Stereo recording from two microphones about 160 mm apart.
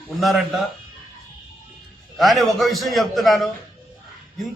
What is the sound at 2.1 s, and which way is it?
A man's voice, centre (ahead or behind).